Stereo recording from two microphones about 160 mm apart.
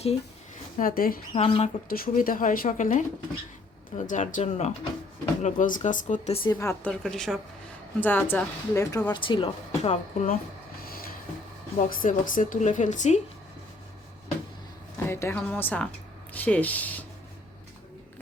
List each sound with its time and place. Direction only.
0.8 s speech: 60° left (ahead or behind)
1.3 s speech: 35° left (ahead or behind)
1.9 s speech: 65° left (ahead or behind)
6.3 s speech: 30° left (ahead or behind)
6.6 s a woman's voice: 15° left (ahead or behind); by 10.2 s 40° left (ahead or behind)
11.8 s speech: 55° left (ahead or behind)
14.9 s speech: 15° left (ahead or behind)